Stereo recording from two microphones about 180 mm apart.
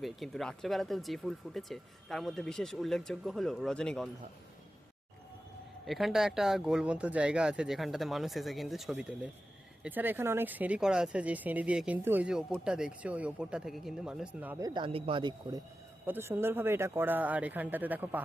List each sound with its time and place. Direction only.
0.0 s speech: centre (ahead or behind)
5.8 s speech: centre (ahead or behind)
14.6 s speech: 25° right (ahead or behind)
16.0 s speech: 10° right (ahead or behind)